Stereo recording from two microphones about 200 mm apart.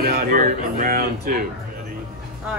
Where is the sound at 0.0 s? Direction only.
45° right (ahead or behind).